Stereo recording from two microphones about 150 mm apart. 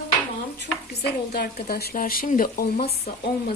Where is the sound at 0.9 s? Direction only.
90° left; by 2.7 s 70° left (ahead or behind).